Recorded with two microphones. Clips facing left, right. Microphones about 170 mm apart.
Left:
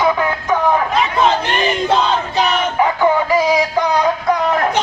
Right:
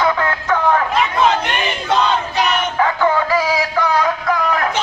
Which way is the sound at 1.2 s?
35° left (ahead or behind).